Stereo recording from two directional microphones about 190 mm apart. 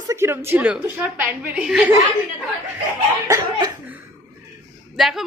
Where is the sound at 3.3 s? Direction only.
20° right (ahead or behind).